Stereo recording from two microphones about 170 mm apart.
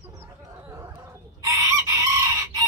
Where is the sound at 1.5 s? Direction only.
20° right (ahead or behind).